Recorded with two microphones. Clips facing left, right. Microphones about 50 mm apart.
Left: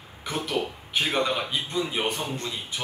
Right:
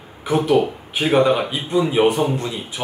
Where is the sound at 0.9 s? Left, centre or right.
Centre.